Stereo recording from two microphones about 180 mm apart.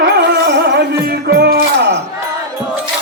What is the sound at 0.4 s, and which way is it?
Music, 70° right (ahead or behind).